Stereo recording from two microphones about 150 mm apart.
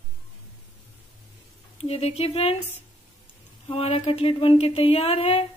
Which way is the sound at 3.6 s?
40° left (ahead or behind).